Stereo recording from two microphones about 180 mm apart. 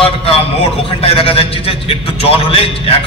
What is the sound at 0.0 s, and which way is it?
A man's voice, 30° left (ahead or behind).